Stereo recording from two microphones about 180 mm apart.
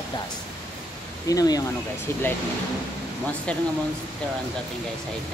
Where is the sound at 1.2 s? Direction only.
20° left (ahead or behind).